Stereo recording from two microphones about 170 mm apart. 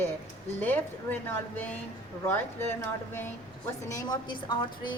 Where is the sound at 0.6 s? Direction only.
10° left (ahead or behind).